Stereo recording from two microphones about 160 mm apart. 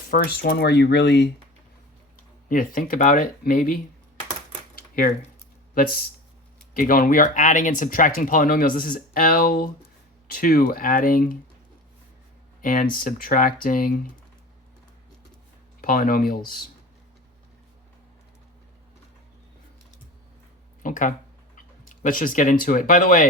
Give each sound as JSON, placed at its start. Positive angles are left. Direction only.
{"t": 0.1, "sound": "speech", "side_deg": 70}
{"t": 2.5, "sound": "speech", "side_deg": 60}
{"t": 4.7, "sound": "a sound", "side_deg": 60}
{"t": 5.7, "sound": "speech", "side_deg": 70}
{"t": 12.6, "sound": "speech", "side_deg": 60}
{"t": 15.8, "sound": "speech", "side_deg": 60}
{"t": 20.8, "sound": "speech", "side_deg": 55}